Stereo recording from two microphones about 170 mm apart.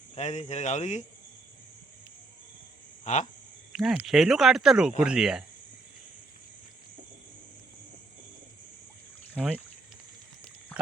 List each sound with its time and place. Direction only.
0.2 s speech: 40° left (ahead or behind)
3.0 s speech: 45° left (ahead or behind)
3.7 s speech: 5° right (ahead or behind)
9.4 s speech: 5° left (ahead or behind)